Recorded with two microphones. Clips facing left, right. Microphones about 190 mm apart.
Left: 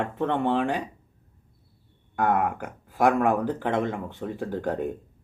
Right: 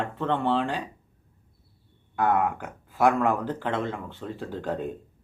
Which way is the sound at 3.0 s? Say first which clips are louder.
Left 1 dB; 15° left (ahead or behind).